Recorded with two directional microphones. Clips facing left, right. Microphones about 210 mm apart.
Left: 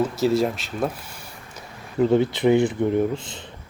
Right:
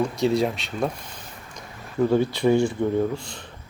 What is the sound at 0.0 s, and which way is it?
Speech, centre (ahead or behind).